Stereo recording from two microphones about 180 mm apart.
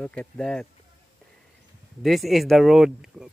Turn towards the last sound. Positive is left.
turn(degrees=-5)  # may be behind; listen again after turning